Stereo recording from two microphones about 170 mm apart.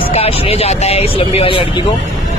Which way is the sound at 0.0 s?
35° left (ahead or behind).